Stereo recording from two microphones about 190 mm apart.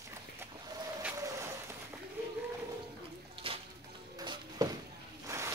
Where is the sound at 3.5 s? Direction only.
30° right (ahead or behind).